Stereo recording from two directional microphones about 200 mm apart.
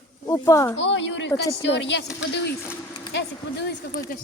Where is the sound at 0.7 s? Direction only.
65° left (ahead or behind).